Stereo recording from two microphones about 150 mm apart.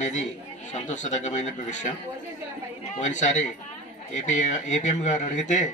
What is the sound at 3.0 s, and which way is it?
A man's voice, 50° left (ahead or behind).